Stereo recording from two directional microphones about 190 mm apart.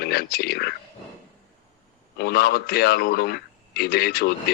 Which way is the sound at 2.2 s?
55° left (ahead or behind).